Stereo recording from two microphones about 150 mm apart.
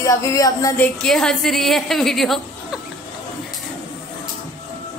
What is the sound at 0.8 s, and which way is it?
A woman's voice, 5° left (ahead or behind).